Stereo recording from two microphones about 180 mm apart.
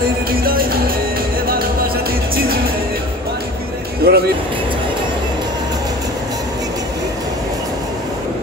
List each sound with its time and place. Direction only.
0.3 s music: 55° right (ahead or behind)
4.0 s music: 60° right (ahead or behind)